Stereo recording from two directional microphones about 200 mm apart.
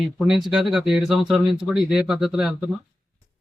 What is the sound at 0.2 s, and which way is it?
Speech, centre (ahead or behind).